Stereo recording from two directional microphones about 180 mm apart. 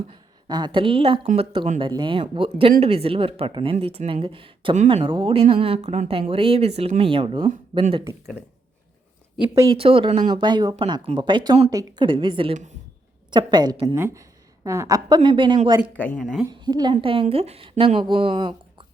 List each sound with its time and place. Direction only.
0.1 s a woman's voice: 25° right (ahead or behind)
1.8 s a woman's voice: 25° right (ahead or behind)
9.7 s a woman's voice: 30° right (ahead or behind)
16.0 s a woman's voice: 5° left (ahead or behind)
16.6 s a woman's voice: 25° right (ahead or behind)